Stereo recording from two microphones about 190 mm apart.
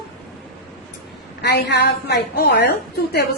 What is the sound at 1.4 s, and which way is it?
A woman's voice, 60° left (ahead or behind).